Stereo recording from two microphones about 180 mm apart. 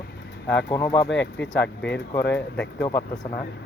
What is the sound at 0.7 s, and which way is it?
Speech, 15° left (ahead or behind).